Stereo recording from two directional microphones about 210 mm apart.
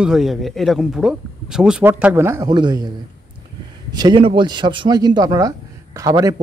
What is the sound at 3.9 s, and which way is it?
A man's voice, 20° right (ahead or behind).